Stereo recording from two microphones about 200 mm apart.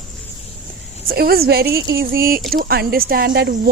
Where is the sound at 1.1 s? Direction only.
50° right (ahead or behind).